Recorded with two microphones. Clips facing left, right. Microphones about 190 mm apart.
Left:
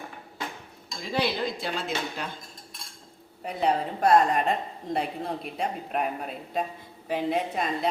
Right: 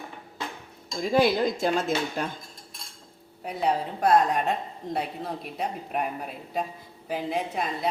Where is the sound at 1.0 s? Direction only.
45° right (ahead or behind).